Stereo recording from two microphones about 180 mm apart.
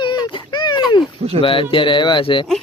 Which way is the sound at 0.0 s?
25° left (ahead or behind).